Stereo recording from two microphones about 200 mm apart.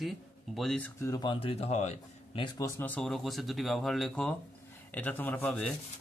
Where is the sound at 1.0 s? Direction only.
20° left (ahead or behind); by 2.4 s 35° left (ahead or behind).